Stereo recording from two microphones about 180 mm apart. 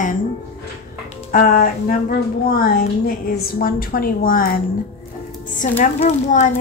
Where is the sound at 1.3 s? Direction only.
50° left (ahead or behind).